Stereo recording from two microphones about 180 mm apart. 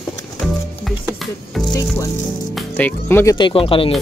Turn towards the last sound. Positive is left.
turn(degrees=30)  # may be behind; listen again after turning